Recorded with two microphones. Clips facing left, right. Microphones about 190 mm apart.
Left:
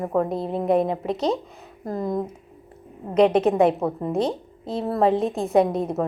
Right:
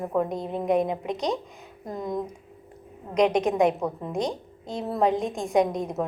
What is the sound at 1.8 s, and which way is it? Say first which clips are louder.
Speech: left 6 dB; 55° left (ahead or behind).